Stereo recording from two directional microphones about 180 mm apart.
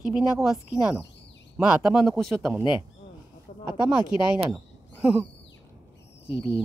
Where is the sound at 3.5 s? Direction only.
35° left (ahead or behind).